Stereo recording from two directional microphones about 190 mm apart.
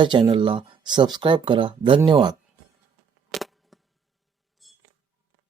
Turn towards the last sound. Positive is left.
turn(degrees=0)  # may be behind; listen again after turning